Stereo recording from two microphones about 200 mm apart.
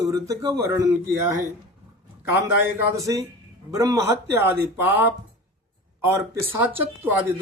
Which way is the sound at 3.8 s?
15° right (ahead or behind).